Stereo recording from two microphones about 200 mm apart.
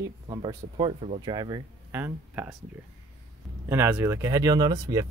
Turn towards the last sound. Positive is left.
turn(degrees=-20)  # may be behind; listen again after turning